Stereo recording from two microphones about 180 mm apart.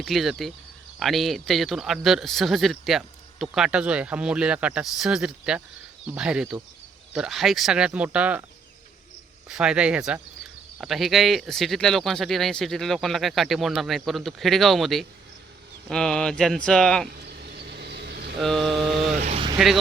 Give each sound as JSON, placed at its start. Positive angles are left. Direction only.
{"t": 0.0, "sound": "speech", "side_deg": 0}
{"t": 9.5, "sound": "speech", "side_deg": -5}
{"t": 17.2, "sound": "a sound", "side_deg": -65}
{"t": 18.3, "sound": "mantra", "side_deg": 0}
{"t": 19.3, "sound": "vehicle", "side_deg": -30}
{"t": 19.5, "sound": "speech", "side_deg": 0}